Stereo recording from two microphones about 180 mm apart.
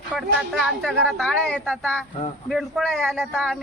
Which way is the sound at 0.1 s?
Centre (ahead or behind).